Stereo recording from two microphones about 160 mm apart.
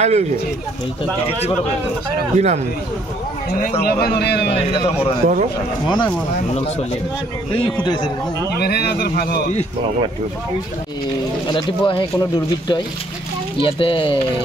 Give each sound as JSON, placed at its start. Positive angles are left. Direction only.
{"t": 0.0, "sound": "speech", "side_deg": -45}
{"t": 2.3, "sound": "speech", "side_deg": -45}
{"t": 4.0, "sound": "a man's voice", "side_deg": 90}
{"t": 5.2, "sound": "speech", "side_deg": -55}
{"t": 5.9, "sound": "speech", "side_deg": 25}
{"t": 7.5, "sound": "speech", "side_deg": 30}
{"t": 8.5, "sound": "speech", "side_deg": 85}
{"t": 11.4, "sound": "speech", "side_deg": 30}